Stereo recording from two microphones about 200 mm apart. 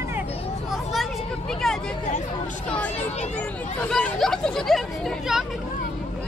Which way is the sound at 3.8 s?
5° left (ahead or behind).